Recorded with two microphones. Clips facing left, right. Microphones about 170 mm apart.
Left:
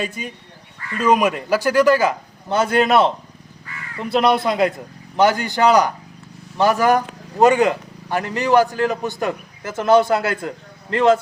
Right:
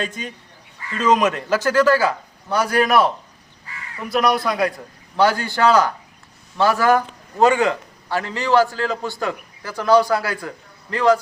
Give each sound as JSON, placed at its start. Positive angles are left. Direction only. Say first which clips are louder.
{"t": 0.0, "sound": "speech", "louder": "left 1 dB", "side_deg": 10}
{"t": 4.1, "sound": "a man's voice", "louder": "left 2 dB", "side_deg": 25}